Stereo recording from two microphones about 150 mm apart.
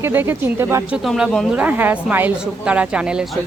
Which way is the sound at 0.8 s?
5° right (ahead or behind).